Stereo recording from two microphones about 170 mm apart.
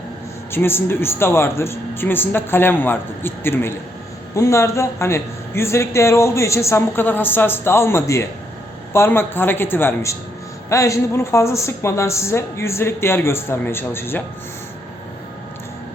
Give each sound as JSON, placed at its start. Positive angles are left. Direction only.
{"t": 0.5, "sound": "a man's voice", "side_deg": 15}